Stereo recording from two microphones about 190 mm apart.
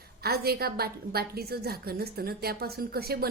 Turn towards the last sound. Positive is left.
turn(degrees=-55)  # may be behind; listen again after turning